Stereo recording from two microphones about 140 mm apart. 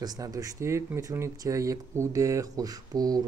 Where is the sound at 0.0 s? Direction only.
25° right (ahead or behind).